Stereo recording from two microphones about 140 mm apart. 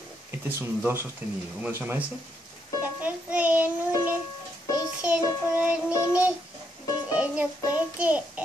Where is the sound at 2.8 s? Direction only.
10° right (ahead or behind).